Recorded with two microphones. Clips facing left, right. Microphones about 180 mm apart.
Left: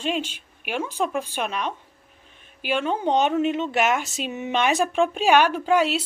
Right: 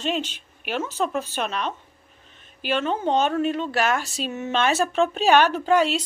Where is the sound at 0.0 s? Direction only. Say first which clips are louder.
Even; 10° left (ahead or behind).